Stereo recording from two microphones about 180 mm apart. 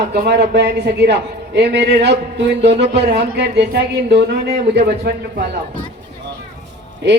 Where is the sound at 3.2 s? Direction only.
65° right (ahead or behind).